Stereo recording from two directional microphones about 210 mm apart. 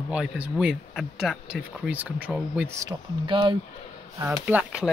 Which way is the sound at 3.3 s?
20° right (ahead or behind).